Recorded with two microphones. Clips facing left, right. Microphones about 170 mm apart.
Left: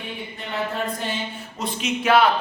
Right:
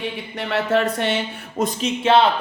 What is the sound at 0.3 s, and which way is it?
Speech, 80° right.